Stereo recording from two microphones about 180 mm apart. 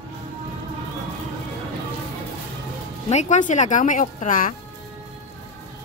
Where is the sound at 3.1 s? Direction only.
40° left (ahead or behind).